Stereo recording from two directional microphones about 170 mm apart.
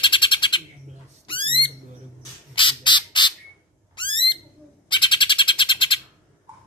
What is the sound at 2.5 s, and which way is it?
Squawk, 30° left (ahead or behind).